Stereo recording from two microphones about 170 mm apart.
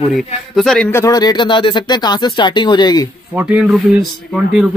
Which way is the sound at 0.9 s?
20° left (ahead or behind).